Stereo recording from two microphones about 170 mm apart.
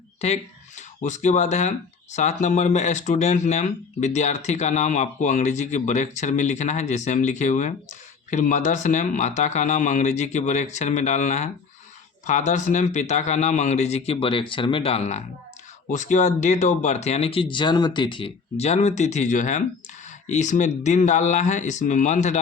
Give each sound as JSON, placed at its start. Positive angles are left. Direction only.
{"t": 0.2, "sound": "a man's voice", "side_deg": 40}